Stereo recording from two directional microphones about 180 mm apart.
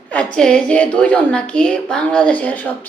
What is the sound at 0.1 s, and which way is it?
A woman's voice, 5° left (ahead or behind).